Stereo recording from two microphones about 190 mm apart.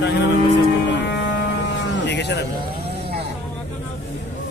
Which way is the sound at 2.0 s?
65° left (ahead or behind).